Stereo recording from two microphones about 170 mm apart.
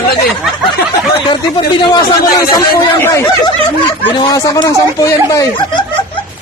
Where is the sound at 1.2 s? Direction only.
30° left (ahead or behind).